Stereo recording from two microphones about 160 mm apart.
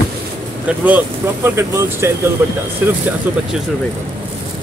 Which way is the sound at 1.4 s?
15° right (ahead or behind).